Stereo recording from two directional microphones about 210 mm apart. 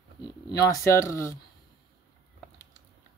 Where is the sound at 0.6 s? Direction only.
15° left (ahead or behind).